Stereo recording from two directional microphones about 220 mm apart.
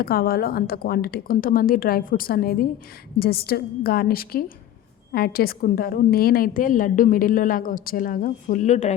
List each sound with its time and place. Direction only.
0.0 s a woman's voice: 45° left (ahead or behind)